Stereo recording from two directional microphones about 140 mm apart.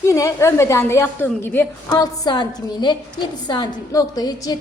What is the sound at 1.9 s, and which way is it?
A woman's voice, 30° left (ahead or behind).